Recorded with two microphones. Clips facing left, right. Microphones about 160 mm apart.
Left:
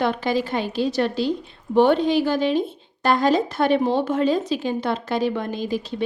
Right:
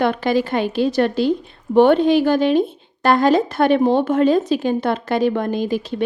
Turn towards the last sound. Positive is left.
turn(degrees=-55)  # may be behind; listen again after turning